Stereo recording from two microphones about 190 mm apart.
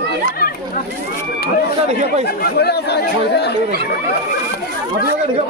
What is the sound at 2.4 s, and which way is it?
Speech, 55° left (ahead or behind).